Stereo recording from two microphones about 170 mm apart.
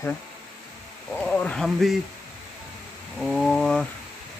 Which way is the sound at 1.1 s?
10° left (ahead or behind).